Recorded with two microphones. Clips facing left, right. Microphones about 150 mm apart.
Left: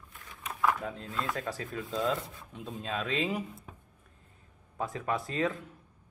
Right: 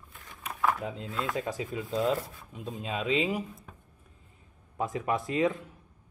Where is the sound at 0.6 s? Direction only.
15° right (ahead or behind).